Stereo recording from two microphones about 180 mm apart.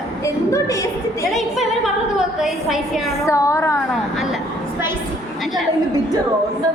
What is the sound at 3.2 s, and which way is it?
Speech, 15° left (ahead or behind).